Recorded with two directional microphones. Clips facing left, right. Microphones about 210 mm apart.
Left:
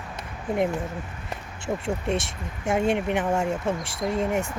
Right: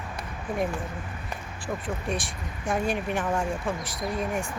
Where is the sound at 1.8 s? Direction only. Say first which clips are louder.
Left 5 dB; 25° left (ahead or behind).